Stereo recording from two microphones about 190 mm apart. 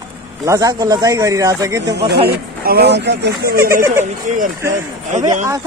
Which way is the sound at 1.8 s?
60° right (ahead or behind).